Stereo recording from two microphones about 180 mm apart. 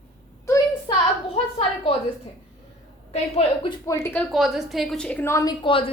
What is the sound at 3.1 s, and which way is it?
Speech, 35° left (ahead or behind).